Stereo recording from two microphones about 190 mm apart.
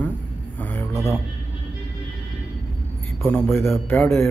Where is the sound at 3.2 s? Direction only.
15° left (ahead or behind).